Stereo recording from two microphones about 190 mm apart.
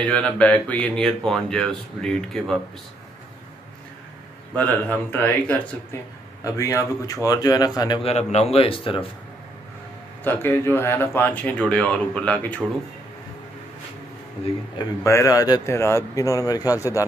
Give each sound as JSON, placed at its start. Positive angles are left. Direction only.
{"t": 0.0, "sound": "speech", "side_deg": 5}
{"t": 4.6, "sound": "a man's voice", "side_deg": 10}
{"t": 10.2, "sound": "speech", "side_deg": 10}
{"t": 14.8, "sound": "speech", "side_deg": 15}